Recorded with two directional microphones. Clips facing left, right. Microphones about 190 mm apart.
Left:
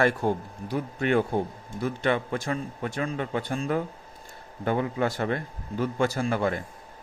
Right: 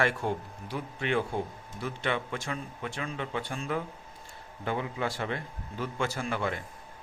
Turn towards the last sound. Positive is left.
turn(degrees=40)  # may be behind; listen again after turning